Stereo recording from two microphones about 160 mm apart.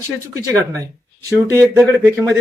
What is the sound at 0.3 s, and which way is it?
A man's voice, 20° right (ahead or behind).